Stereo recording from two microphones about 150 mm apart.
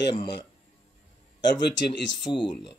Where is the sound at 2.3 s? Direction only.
30° left (ahead or behind).